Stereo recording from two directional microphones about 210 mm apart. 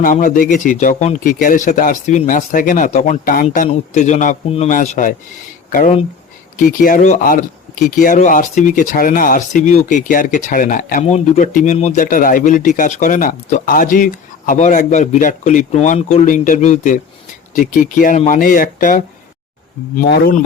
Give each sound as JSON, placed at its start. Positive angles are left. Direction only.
{"t": 0.0, "sound": "speech", "side_deg": 40}
{"t": 20.1, "sound": "a man's voice", "side_deg": 45}